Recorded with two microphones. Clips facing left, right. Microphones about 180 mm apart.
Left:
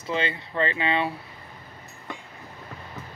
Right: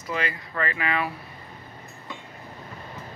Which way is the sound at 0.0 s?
25° left (ahead or behind).